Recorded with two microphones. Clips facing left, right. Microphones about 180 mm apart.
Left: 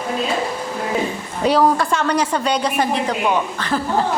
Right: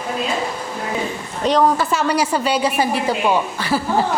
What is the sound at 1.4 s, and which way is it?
Speech, 10° left (ahead or behind).